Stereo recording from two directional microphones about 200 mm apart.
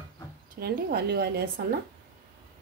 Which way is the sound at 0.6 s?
50° right (ahead or behind).